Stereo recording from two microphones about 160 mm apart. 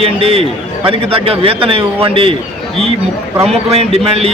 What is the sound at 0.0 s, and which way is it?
A man's voice, 35° right (ahead or behind).